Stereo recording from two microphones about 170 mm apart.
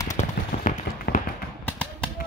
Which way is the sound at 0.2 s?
45° left (ahead or behind).